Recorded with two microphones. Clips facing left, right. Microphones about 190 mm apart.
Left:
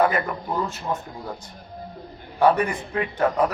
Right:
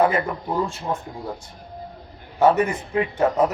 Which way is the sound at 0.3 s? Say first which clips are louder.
Right 2 dB; 10° right (ahead or behind).